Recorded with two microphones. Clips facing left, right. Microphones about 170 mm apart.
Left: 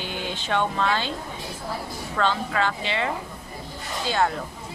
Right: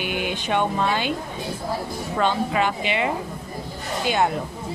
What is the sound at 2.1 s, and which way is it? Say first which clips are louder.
Speech: right 3 dB; 15° right (ahead or behind).